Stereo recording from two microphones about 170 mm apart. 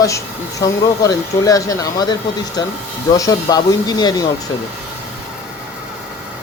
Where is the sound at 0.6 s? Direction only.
20° left (ahead or behind).